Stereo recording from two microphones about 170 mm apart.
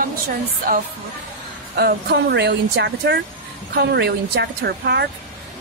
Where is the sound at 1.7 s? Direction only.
70° right (ahead or behind).